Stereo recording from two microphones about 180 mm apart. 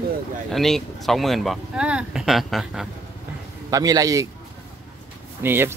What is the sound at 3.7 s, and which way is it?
Speech, 20° right (ahead or behind).